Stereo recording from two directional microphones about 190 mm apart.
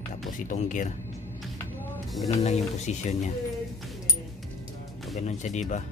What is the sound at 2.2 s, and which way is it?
Speech, 35° left (ahead or behind).